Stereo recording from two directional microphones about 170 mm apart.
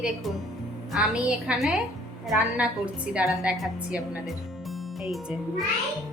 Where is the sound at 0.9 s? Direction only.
5° right (ahead or behind).